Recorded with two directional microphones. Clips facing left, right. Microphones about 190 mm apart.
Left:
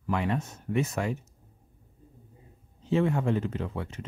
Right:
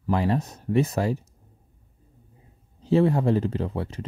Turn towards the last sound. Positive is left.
turn(degrees=-35)  # may be behind; listen again after turning